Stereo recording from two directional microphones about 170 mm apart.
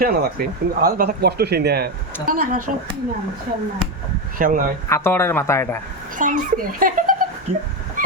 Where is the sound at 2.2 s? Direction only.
55° right (ahead or behind).